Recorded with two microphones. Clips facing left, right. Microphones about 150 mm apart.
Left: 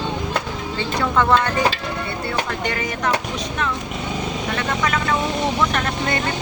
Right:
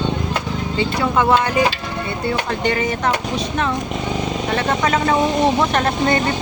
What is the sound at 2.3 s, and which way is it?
Speech, 25° right (ahead or behind).